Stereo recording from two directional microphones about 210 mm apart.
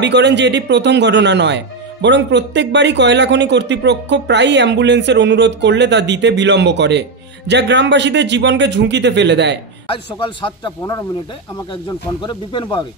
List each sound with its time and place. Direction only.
0.0 s speech: 55° right (ahead or behind)
9.8 s speech: 25° left (ahead or behind)